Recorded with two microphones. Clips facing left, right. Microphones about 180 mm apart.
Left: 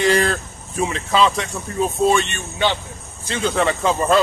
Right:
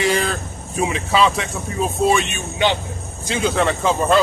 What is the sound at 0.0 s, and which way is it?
Speech, centre (ahead or behind).